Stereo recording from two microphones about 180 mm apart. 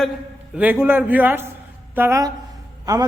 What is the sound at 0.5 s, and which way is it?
A man's voice, 10° right (ahead or behind).